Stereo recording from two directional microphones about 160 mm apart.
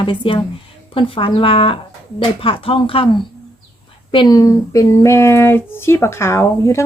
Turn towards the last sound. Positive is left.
turn(degrees=15)  # may be behind; listen again after turning